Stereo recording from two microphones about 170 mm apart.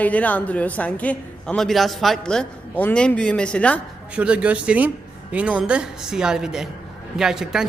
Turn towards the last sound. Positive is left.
turn(degrees=-5)  # may be behind; listen again after turning